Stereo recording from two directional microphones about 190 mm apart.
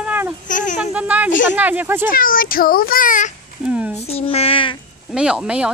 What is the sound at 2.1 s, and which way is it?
A child's voice, 45° left (ahead or behind).